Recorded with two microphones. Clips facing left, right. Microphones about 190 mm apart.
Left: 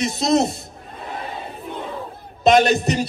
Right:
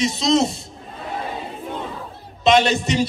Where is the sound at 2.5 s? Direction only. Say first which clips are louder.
Left 1 dB; 55° left (ahead or behind).